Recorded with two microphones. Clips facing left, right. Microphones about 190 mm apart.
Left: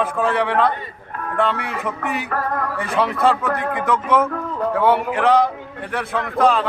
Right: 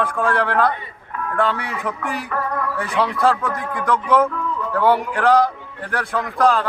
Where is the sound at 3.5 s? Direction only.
60° left (ahead or behind).